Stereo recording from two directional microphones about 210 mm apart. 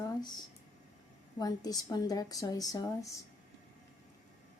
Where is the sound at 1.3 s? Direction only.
20° left (ahead or behind).